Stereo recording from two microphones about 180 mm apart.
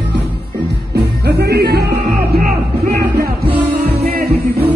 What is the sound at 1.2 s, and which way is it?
Music, 65° right (ahead or behind).